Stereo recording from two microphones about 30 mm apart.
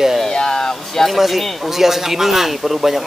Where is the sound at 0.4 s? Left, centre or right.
Left.